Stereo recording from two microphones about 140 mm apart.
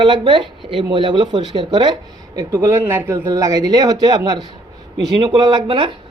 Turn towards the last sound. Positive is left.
turn(degrees=-35)  # may be behind; listen again after turning